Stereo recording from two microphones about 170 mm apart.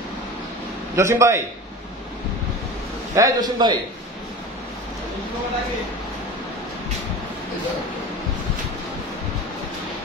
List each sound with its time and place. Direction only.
0.9 s a man's voice: 15° right (ahead or behind)
3.2 s a man's voice: 20° right (ahead or behind)